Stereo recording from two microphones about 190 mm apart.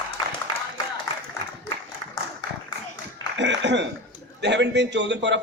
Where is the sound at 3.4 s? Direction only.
65° right (ahead or behind).